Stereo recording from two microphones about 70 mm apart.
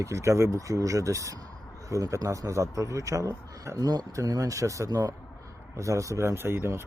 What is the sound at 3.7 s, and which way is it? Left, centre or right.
Speech, right.